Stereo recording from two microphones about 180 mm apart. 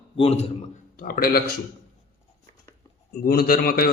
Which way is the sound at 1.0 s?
55° left (ahead or behind).